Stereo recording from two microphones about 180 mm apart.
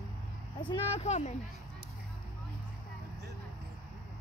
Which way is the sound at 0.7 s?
35° left (ahead or behind).